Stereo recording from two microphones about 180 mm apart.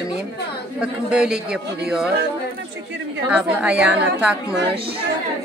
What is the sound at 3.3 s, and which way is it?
A woman's voice, 5° right (ahead or behind).